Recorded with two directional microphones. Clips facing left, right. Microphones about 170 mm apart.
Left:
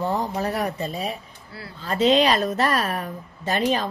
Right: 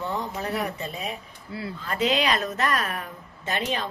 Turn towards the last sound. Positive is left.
turn(degrees=40)  # may be behind; listen again after turning